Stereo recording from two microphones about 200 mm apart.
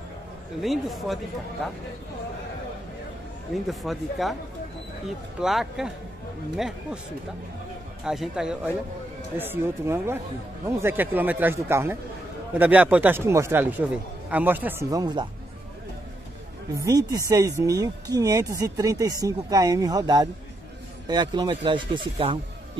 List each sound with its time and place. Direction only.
0.6 s speech: centre (ahead or behind)
3.5 s speech: centre (ahead or behind)
8.0 s speech: centre (ahead or behind); by 15.2 s 20° right (ahead or behind)
16.7 s speech: 15° right (ahead or behind)